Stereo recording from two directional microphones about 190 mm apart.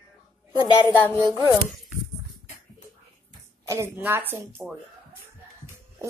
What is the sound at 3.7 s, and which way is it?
Speech, 15° right (ahead or behind).